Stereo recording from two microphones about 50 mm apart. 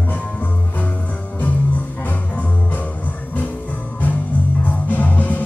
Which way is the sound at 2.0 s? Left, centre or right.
Left.